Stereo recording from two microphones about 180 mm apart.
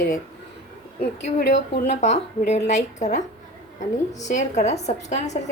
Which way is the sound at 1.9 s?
40° left (ahead or behind).